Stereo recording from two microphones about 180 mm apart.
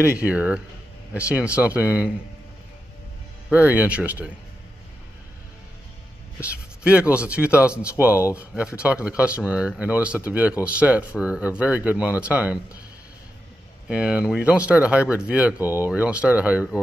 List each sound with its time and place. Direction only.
0.2 s speech: 5° right (ahead or behind)
3.4 s speech: 10° right (ahead or behind)
6.4 s speech: 5° right (ahead or behind)
8.2 s speech: 15° left (ahead or behind)
8.8 s speech: 5° right (ahead or behind)
13.8 s speech: 5° right (ahead or behind)